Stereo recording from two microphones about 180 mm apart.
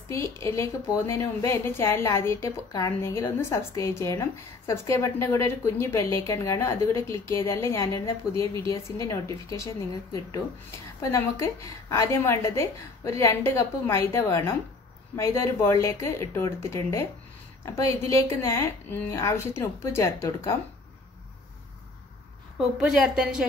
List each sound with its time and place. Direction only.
0.1 s a woman's voice: 15° left (ahead or behind)
11.0 s a woman's voice: 15° left (ahead or behind)
22.6 s a woman's voice: centre (ahead or behind)